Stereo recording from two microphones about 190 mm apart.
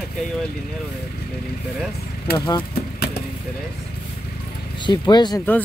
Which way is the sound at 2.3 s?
20° left (ahead or behind).